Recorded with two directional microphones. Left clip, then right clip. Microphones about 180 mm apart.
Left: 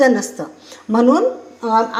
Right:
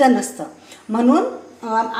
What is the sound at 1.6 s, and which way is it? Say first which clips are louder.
Speech: left 4 dB; 40° left (ahead or behind).